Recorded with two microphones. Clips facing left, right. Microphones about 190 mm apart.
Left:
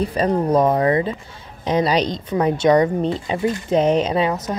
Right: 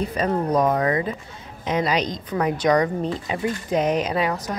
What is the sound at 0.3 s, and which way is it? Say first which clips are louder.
A woman's voice: left 3 dB; 25° left (ahead or behind).